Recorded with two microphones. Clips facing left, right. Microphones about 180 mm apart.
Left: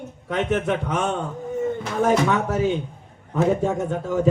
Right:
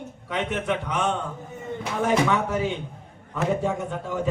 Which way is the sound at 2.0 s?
40° left (ahead or behind).